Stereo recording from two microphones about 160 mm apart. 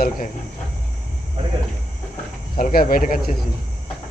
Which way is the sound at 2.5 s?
60° left (ahead or behind).